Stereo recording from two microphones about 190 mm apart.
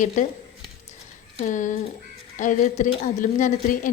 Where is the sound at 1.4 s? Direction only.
40° left (ahead or behind).